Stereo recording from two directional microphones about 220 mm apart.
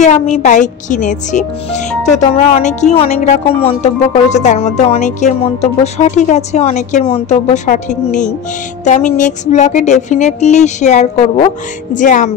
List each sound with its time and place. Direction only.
0.0 s speech: 30° left (ahead or behind)